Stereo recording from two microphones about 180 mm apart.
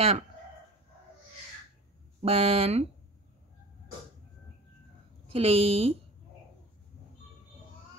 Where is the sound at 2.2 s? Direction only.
35° right (ahead or behind).